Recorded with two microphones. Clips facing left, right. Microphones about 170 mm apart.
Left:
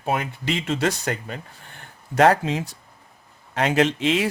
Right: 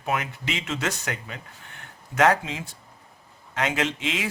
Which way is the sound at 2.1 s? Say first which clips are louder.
Left 4 dB; 35° left (ahead or behind).